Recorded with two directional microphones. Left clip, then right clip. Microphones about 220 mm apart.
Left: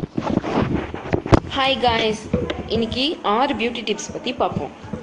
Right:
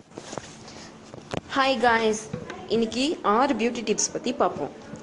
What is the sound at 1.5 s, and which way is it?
Speech, 25° right (ahead or behind).